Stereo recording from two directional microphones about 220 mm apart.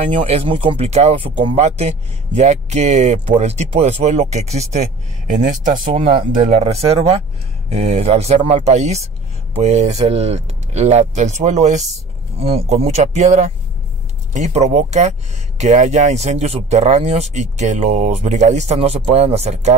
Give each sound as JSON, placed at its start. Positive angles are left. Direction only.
{"t": 0.3, "sound": "speech", "side_deg": -25}